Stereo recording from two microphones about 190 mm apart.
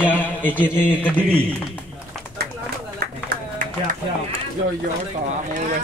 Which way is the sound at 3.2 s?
50° right (ahead or behind).